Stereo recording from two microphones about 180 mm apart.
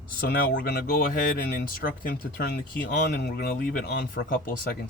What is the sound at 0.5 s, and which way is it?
Speech, 60° left (ahead or behind).